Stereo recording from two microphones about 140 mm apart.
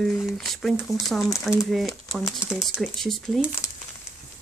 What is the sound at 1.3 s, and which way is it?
Speech, 25° left (ahead or behind).